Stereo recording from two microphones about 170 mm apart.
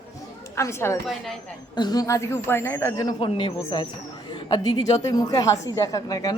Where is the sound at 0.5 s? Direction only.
15° left (ahead or behind).